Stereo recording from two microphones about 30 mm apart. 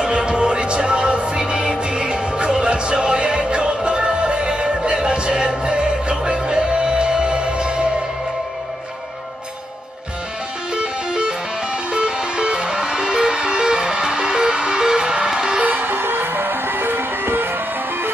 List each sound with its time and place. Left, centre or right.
0.0 s music: right
10.7 s music: right
15.6 s music: right